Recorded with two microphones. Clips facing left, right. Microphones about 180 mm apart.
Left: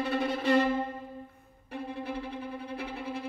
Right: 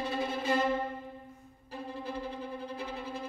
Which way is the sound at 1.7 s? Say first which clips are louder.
Left 3 dB; 60° left (ahead or behind).